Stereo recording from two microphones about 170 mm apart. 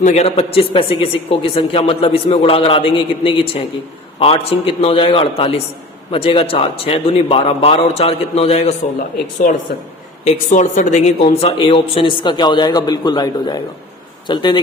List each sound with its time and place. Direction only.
0.0 s speech: 40° left (ahead or behind)
9.1 s a woman's voice: 50° left (ahead or behind); by 14.6 s 25° left (ahead or behind)